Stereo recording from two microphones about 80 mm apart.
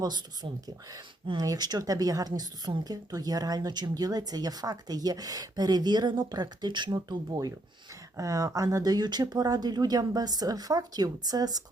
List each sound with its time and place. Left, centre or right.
0.0 s a woman's voice: right
1.8 s a woman's voice: right
8.1 s a woman's voice: right